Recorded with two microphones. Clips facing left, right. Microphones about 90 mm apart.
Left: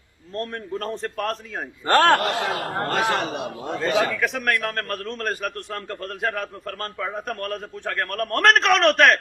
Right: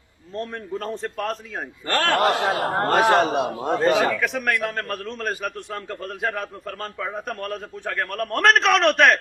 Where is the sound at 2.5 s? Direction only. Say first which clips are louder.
Right 4 dB; 20° right (ahead or behind).